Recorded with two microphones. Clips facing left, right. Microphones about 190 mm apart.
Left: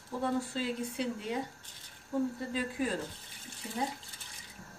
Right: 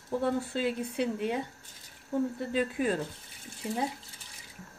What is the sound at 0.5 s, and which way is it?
Speech, 60° right (ahead or behind).